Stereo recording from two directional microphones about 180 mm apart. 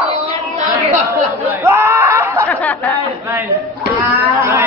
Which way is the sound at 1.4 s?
15° right (ahead or behind).